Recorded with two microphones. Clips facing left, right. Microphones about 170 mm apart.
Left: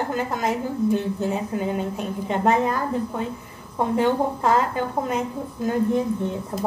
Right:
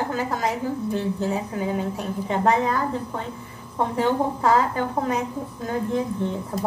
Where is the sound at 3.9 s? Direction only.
Centre (ahead or behind).